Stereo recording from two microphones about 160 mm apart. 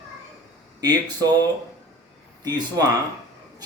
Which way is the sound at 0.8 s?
25° right (ahead or behind).